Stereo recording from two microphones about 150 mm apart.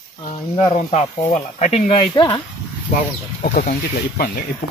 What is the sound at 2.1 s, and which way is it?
Speech, 30° left (ahead or behind).